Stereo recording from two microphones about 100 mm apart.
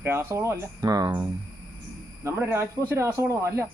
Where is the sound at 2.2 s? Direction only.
25° right (ahead or behind).